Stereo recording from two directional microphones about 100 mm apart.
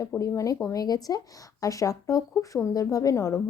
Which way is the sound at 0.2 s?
35° left (ahead or behind).